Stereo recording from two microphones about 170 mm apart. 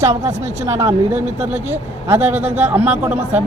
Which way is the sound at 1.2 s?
40° right (ahead or behind).